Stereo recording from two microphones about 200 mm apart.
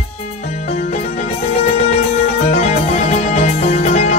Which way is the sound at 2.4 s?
35° left (ahead or behind).